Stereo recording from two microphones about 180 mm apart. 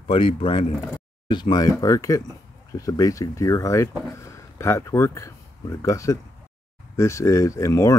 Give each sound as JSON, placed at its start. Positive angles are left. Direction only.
{"t": 0.0, "sound": "speech", "side_deg": 30}